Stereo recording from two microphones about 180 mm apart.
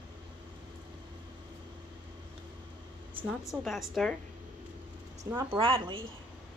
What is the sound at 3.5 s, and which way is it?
Speech, centre (ahead or behind).